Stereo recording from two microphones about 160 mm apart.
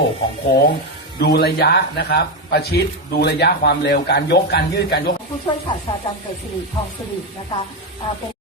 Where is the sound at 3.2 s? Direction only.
90° left.